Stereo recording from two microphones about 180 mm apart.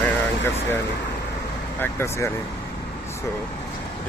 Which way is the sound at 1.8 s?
15° left (ahead or behind).